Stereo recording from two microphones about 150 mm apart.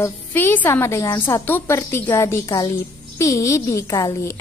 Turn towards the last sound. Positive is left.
turn(degrees=20)  # may be behind; listen again after turning